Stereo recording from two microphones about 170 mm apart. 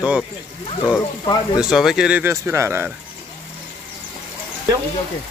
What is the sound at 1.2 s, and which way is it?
Speech, 25° left (ahead or behind).